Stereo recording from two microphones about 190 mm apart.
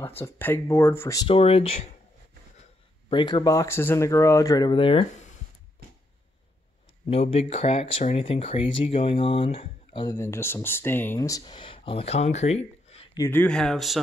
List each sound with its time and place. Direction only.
0.2 s speech: 10° left (ahead or behind); by 1.9 s 30° left (ahead or behind)
3.1 s speech: 25° left (ahead or behind)
7.1 s speech: 30° left (ahead or behind)
10.0 s speech: 15° left (ahead or behind); by 13.2 s 30° left (ahead or behind)
13.2 s speech: 10° left (ahead or behind)